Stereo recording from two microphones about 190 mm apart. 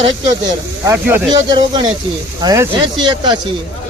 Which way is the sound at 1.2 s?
20° right (ahead or behind).